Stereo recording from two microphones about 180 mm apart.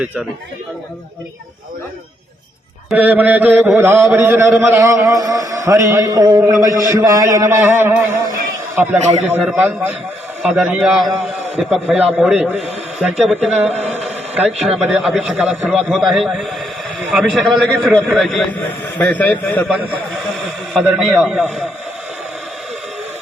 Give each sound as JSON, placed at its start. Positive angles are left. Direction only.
{"t": 2.9, "sound": "mantra", "side_deg": -10}
{"t": 8.7, "sound": "a man's voice", "side_deg": -10}
{"t": 9.2, "sound": "mantra", "side_deg": -5}
{"t": 10.4, "sound": "a man's voice", "side_deg": -5}
{"t": 13.0, "sound": "mantra", "side_deg": -5}
{"t": 14.0, "sound": "a man's voice", "side_deg": -5}
{"t": 19.6, "sound": "a man's voice", "side_deg": 0}